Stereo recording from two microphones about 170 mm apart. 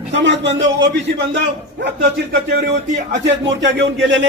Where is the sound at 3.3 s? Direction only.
90° right.